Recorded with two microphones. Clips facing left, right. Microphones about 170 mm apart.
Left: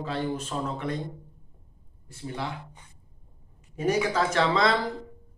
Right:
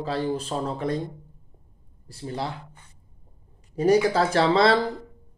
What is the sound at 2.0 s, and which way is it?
Speech, 35° right (ahead or behind).